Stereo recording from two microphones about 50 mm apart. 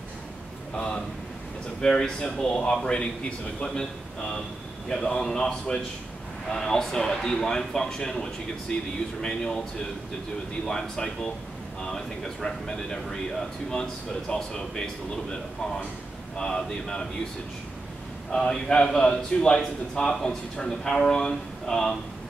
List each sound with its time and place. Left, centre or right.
0.7 s a man's voice: left
2.6 s a man's voice: centre
4.8 s a man's voice: centre
10.7 s a man's voice: centre
16.3 s a man's voice: centre
18.3 s a man's voice: centre